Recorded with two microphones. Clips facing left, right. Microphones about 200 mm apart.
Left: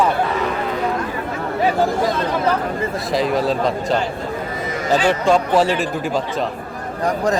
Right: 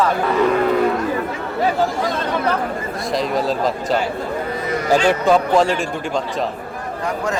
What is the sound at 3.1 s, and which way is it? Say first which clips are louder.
Speech: left 1 dB; centre (ahead or behind).